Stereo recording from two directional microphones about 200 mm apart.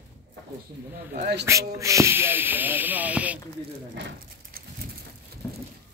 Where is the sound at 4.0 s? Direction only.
60° right (ahead or behind).